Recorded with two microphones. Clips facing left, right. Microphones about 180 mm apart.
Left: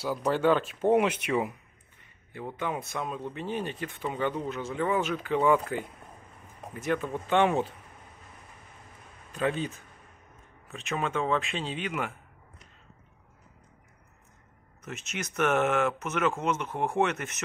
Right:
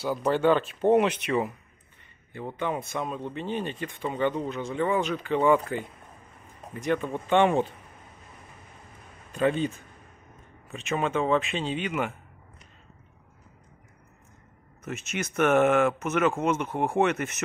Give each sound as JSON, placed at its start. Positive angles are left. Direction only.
{"t": 0.0, "sound": "speech", "side_deg": 5}
{"t": 9.3, "sound": "speech", "side_deg": 0}
{"t": 10.7, "sound": "speech", "side_deg": 0}
{"t": 14.9, "sound": "speech", "side_deg": 0}
{"t": 16.6, "sound": "speech", "side_deg": -15}
{"t": 17.0, "sound": "speech", "side_deg": 0}